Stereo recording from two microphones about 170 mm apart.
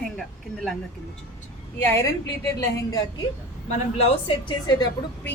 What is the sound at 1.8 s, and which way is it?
Speech, 15° left (ahead or behind).